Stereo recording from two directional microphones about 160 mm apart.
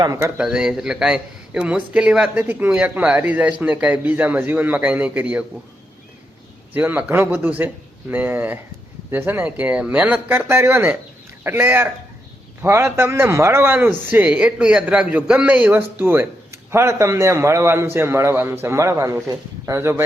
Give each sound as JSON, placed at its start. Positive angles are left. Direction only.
{"t": 0.0, "sound": "speech", "side_deg": -20}
{"t": 0.3, "sound": "a man's voice", "side_deg": -5}
{"t": 6.7, "sound": "a man's voice", "side_deg": -10}